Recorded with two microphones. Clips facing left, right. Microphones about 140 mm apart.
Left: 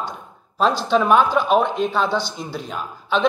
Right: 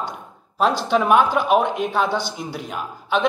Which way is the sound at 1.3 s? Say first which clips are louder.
Left 1 dB; 15° right (ahead or behind).